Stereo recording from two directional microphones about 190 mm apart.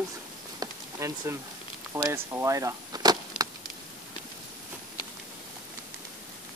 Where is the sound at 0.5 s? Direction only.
15° right (ahead or behind).